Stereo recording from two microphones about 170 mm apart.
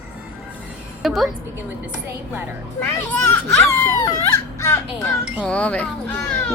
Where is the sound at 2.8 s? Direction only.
10° left (ahead or behind).